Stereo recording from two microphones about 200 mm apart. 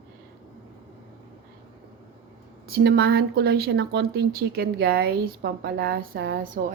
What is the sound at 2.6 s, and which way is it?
Speech, 50° right (ahead or behind).